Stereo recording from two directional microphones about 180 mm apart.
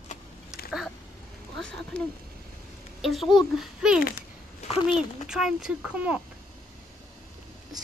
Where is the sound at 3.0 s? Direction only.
Centre (ahead or behind).